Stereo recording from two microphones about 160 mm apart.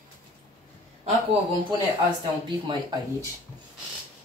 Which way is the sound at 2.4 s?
25° right (ahead or behind).